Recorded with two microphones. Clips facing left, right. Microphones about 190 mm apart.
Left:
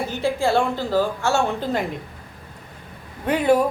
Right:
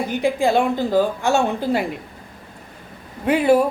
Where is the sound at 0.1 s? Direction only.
15° right (ahead or behind).